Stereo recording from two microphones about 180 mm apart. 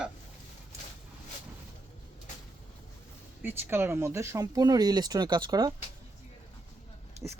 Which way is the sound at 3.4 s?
10° right (ahead or behind).